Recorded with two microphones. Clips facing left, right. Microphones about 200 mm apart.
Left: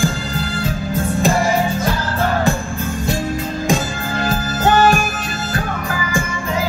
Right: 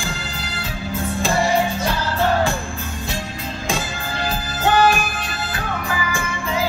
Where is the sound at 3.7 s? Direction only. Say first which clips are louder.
Left 5 dB; 45° left (ahead or behind).